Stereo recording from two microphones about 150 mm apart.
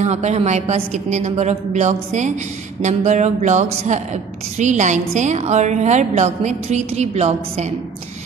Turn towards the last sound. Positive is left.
turn(degrees=-45)  # may be behind; listen again after turning